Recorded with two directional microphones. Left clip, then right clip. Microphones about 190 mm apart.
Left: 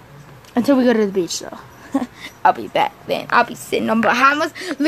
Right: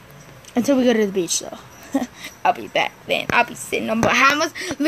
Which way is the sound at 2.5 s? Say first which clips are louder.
Left 3 dB; 10° left (ahead or behind).